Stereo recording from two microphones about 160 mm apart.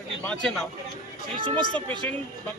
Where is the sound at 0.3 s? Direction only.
5° left (ahead or behind).